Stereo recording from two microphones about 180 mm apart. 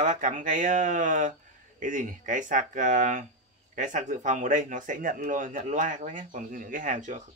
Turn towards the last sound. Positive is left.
turn(degrees=-45)  # may be behind; listen again after turning